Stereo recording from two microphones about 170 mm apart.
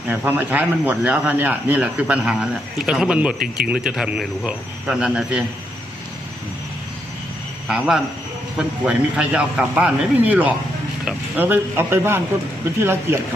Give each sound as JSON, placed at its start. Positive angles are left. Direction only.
{"t": 0.1, "sound": "a man's voice", "side_deg": -10}
{"t": 3.3, "sound": "speech", "side_deg": -60}
{"t": 3.7, "sound": "a man's voice", "side_deg": -5}
{"t": 7.7, "sound": "a man's voice", "side_deg": -5}